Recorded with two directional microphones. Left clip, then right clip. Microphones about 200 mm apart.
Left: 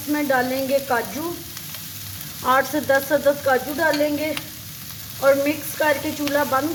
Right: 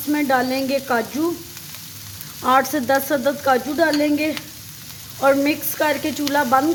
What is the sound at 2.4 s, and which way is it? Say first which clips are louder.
Speech: right 2 dB; 40° right (ahead or behind).